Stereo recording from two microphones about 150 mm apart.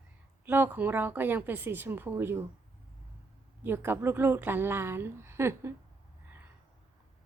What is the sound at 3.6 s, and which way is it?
A woman's voice, 15° right (ahead or behind).